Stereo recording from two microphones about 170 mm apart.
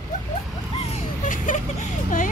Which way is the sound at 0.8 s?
50° left (ahead or behind).